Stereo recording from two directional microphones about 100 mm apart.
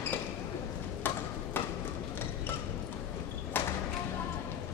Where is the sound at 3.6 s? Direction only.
20° left (ahead or behind).